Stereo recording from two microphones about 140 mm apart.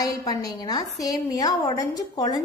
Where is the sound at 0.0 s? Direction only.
25° left (ahead or behind).